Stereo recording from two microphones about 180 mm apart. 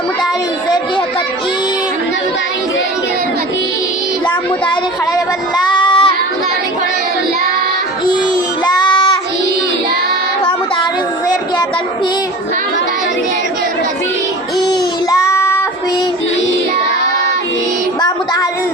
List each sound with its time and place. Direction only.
5.7 s child singing: 30° left (ahead or behind)
8.6 s child singing: 25° left (ahead or behind)
15.1 s child singing: 15° left (ahead or behind)